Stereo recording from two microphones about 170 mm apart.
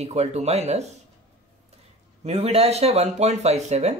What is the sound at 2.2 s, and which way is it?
Speech, 35° right (ahead or behind).